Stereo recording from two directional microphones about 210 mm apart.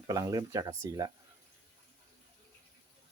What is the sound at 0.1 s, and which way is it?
Speech, 15° right (ahead or behind).